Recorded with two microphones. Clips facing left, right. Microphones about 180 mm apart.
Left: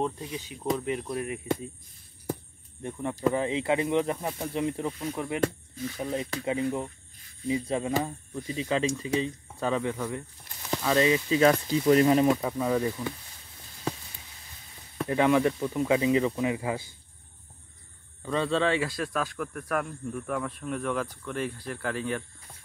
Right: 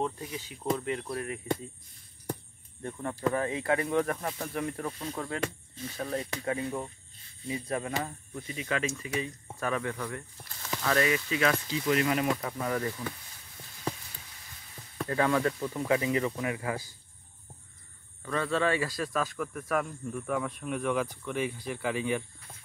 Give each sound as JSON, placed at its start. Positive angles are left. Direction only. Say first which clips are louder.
{"t": 0.0, "sound": "speech", "louder": "left 2 dB", "side_deg": 20}
{"t": 2.8, "sound": "speech", "louder": "left 3 dB", "side_deg": 15}
{"t": 12.3, "sound": "speech", "louder": "left 5 dB", "side_deg": 15}
{"t": 15.0, "sound": "speech", "louder": "left 4 dB", "side_deg": 15}
{"t": 18.2, "sound": "speech", "louder": "left 3 dB", "side_deg": 20}
{"t": 18.7, "sound": "speech", "louder": "left 2 dB", "side_deg": 0}